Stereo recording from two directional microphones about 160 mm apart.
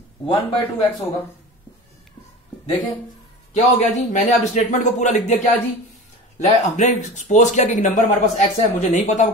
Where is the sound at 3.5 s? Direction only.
45° left (ahead or behind).